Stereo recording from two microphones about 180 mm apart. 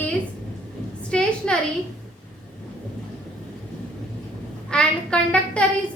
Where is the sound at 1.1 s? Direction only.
5° left (ahead or behind).